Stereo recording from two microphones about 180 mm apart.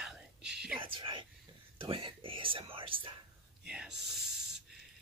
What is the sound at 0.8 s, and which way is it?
Whispering, 30° right (ahead or behind).